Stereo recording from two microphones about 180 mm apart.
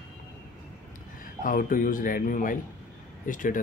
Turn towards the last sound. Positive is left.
turn(degrees=45)  # may be behind; listen again after turning